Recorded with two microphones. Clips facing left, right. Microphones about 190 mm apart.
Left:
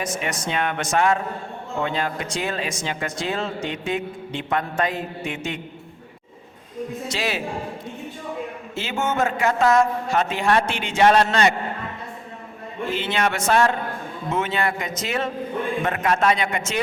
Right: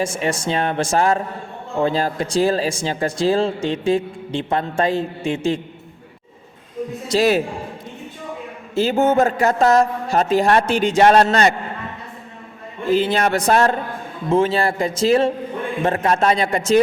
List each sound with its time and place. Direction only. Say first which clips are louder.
0.0 s speech: right 6 dB; 30° right (ahead or behind)
7.1 s speech: right 13 dB; 40° right (ahead or behind)
8.7 s speech: right 10 dB; 35° right (ahead or behind)
12.9 s speech: right 7 dB; 35° right (ahead or behind)